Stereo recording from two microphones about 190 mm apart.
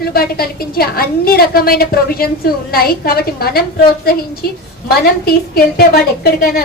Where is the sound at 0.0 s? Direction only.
55° left (ahead or behind).